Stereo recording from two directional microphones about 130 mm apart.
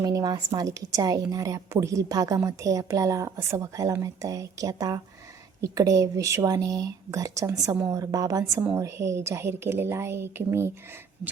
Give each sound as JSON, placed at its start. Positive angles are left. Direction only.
{"t": 0.0, "sound": "a woman's voice", "side_deg": -30}